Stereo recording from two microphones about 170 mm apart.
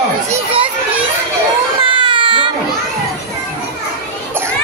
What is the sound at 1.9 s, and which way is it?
Baby cry, 30° right (ahead or behind).